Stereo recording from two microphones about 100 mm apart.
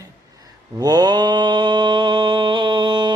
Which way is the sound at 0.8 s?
40° right (ahead or behind).